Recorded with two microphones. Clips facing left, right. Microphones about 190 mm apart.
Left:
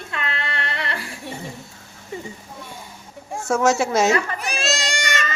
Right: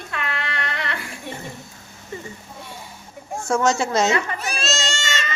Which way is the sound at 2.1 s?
15° left (ahead or behind).